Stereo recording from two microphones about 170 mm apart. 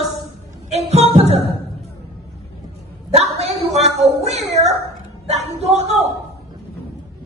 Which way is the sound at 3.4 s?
40° right (ahead or behind).